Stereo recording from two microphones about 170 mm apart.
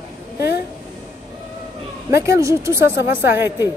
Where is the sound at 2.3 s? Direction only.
15° right (ahead or behind).